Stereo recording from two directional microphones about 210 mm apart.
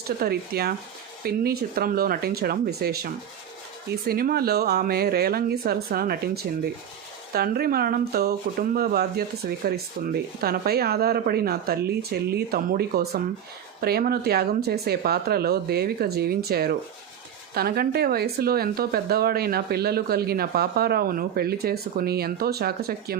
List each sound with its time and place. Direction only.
0.2 s speech: 45° right (ahead or behind)